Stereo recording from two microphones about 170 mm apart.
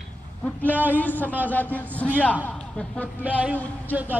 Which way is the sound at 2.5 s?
5° left (ahead or behind).